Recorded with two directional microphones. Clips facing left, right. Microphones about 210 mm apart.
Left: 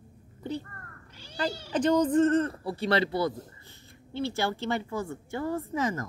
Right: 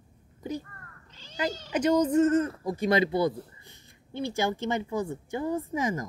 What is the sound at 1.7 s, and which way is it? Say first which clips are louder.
A woman's voice: even; 10° right (ahead or behind).